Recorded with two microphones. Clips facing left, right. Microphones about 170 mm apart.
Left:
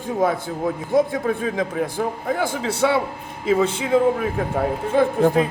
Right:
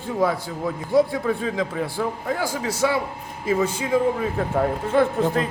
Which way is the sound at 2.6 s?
30° left (ahead or behind).